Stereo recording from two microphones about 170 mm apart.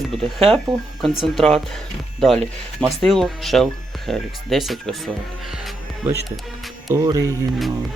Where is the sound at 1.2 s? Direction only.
Centre (ahead or behind).